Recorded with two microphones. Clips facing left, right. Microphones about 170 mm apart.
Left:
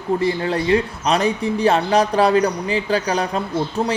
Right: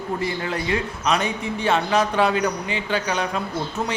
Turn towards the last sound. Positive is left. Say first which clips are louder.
# left 5 dB
turn(degrees=35)  # may be behind; listen again after turning